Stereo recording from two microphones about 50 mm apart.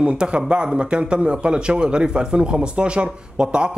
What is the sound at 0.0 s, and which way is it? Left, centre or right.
A man's voice, right.